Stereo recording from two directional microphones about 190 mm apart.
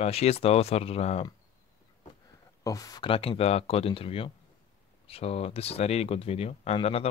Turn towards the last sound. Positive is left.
turn(degrees=30)  # may be behind; listen again after turning